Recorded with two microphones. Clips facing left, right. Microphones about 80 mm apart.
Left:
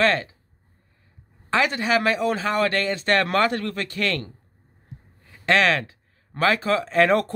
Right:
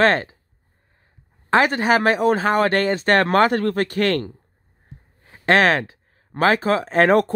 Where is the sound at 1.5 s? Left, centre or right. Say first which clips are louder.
Right 5 dB; right.